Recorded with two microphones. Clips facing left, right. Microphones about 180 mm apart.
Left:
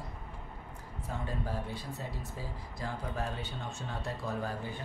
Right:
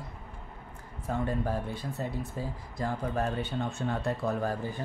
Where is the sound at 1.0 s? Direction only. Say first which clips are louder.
Right 7 dB; 50° right (ahead or behind).